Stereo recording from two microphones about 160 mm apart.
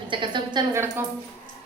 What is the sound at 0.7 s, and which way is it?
Speech, 15° right (ahead or behind).